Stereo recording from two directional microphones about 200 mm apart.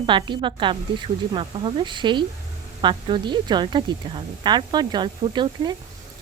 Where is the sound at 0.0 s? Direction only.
25° right (ahead or behind).